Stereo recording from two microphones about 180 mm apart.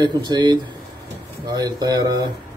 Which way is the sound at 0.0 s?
25° right (ahead or behind).